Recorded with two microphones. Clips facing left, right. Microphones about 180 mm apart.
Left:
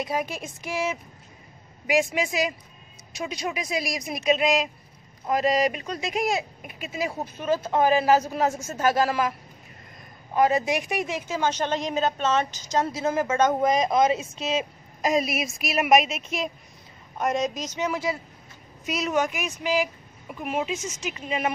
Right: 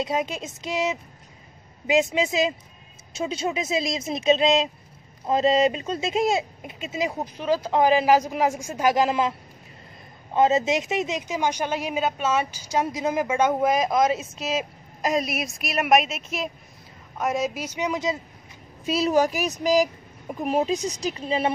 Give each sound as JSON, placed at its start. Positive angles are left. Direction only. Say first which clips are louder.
{"t": 0.0, "sound": "speech", "louder": "right 2 dB", "side_deg": -20}
{"t": 10.3, "sound": "a woman's voice", "louder": "right 2 dB", "side_deg": -25}
{"t": 18.9, "sound": "speech", "louder": "right 4 dB", "side_deg": -30}